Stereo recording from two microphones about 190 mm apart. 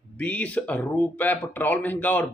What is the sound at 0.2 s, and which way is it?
A man's voice, 5° left (ahead or behind).